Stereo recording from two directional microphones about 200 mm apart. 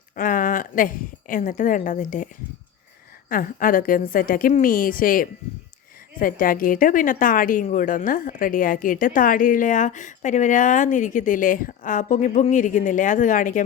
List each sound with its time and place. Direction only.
0.2 s a woman's voice: 40° left (ahead or behind)